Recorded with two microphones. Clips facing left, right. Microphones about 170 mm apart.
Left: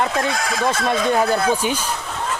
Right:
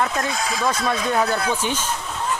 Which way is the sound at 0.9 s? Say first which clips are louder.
Left 4 dB; 25° left (ahead or behind).